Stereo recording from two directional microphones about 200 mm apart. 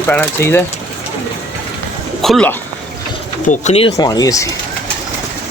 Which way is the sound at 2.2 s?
5° left (ahead or behind).